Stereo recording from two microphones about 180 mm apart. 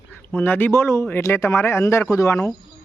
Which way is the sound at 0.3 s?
10° left (ahead or behind).